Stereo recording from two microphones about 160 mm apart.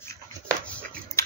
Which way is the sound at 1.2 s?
20° left (ahead or behind).